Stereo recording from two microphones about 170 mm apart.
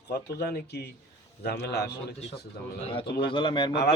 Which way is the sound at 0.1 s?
70° left (ahead or behind).